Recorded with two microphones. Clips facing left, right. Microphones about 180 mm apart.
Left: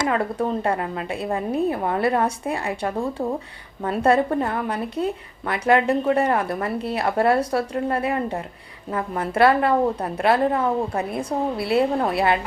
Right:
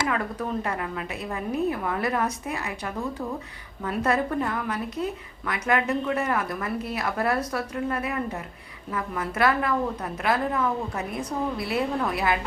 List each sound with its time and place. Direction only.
0.1 s a woman's voice: 30° left (ahead or behind)